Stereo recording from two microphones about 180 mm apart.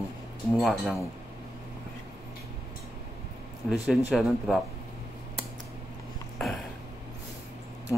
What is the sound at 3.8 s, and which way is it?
Speech, centre (ahead or behind).